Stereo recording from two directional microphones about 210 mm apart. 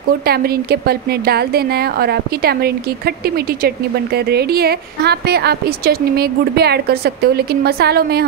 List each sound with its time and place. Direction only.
0.3 s a woman's voice: 50° right (ahead or behind)